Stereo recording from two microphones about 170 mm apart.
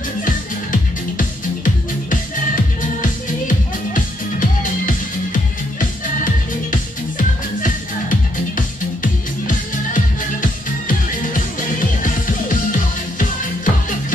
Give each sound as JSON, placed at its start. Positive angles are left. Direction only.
{"t": 0.2, "sound": "music", "side_deg": 50}